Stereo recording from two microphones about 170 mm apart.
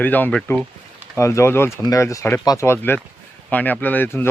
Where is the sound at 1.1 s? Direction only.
15° left (ahead or behind).